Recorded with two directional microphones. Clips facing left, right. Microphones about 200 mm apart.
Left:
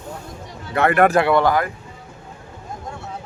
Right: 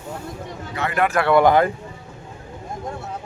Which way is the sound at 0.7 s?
60° left (ahead or behind).